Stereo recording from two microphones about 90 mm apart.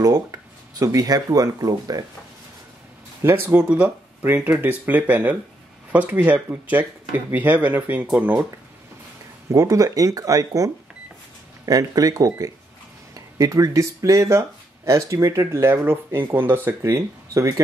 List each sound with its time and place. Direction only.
0.0 s speech: 40° right (ahead or behind)
3.2 s speech: 25° right (ahead or behind)
3.6 s speech: 15° right (ahead or behind)
9.5 s speech: 40° right (ahead or behind)